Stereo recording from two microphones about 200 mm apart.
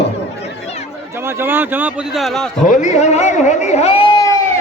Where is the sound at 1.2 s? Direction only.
10° right (ahead or behind).